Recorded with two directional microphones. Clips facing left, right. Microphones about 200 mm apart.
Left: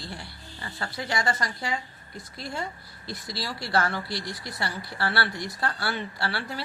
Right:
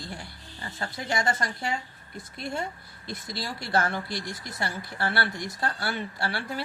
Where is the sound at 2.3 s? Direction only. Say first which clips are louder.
Right 3 dB; 60° right (ahead or behind).